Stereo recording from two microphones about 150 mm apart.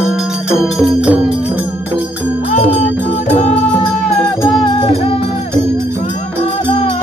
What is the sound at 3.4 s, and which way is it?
Music, 45° left (ahead or behind).